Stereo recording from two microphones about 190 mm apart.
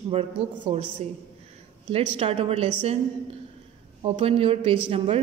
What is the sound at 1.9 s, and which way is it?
Speech, 30° right (ahead or behind).